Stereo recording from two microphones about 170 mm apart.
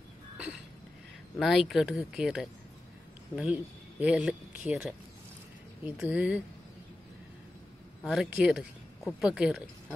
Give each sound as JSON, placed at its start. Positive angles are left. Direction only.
{"t": 1.4, "sound": "speech", "side_deg": 0}
{"t": 8.0, "sound": "speech", "side_deg": -5}